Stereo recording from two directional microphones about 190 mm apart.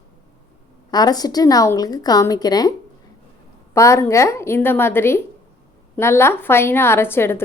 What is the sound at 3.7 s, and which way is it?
A woman's voice, 15° left (ahead or behind).